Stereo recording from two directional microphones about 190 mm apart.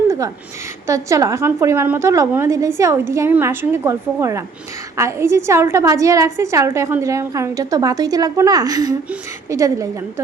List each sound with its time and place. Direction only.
0.9 s a woman's voice: 15° right (ahead or behind)